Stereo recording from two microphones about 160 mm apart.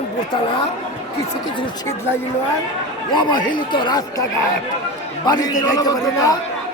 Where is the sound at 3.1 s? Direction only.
30° left (ahead or behind).